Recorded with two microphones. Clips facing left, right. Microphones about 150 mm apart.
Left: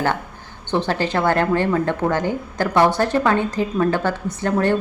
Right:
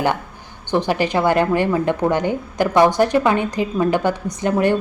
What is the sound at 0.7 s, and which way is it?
Speech, 15° right (ahead or behind).